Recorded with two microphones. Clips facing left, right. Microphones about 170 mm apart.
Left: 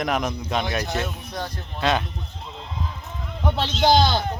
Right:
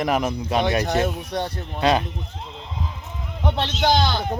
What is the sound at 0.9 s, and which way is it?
Speech, 40° right (ahead or behind).